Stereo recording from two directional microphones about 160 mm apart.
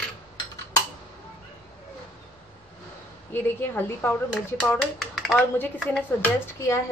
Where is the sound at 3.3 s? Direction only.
10° left (ahead or behind).